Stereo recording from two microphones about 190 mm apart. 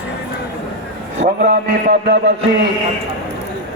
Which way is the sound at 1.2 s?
30° right (ahead or behind).